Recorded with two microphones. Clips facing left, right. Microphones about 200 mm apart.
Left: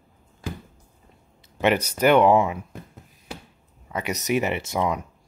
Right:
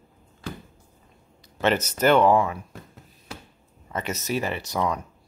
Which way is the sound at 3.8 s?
10° left (ahead or behind).